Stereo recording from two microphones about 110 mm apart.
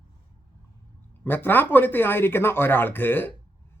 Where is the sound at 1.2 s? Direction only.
20° left (ahead or behind).